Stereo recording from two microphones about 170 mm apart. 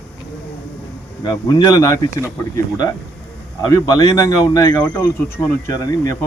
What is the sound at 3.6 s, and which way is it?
Speech, 20° left (ahead or behind).